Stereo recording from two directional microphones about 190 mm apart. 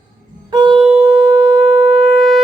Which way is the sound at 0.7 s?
5° right (ahead or behind).